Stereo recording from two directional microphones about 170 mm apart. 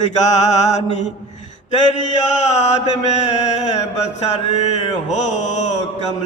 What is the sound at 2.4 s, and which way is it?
Mantra, 40° left (ahead or behind).